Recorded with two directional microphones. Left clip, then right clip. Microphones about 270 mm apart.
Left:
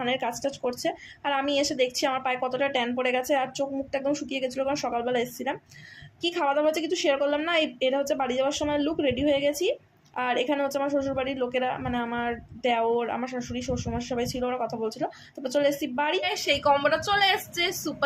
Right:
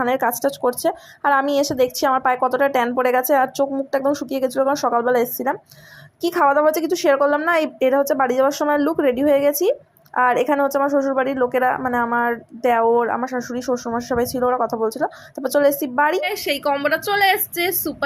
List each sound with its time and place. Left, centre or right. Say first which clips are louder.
0.1 s speech: right 9 dB; right